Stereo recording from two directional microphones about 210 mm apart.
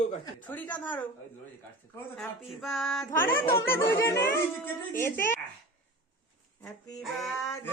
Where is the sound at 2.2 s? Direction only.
Centre (ahead or behind).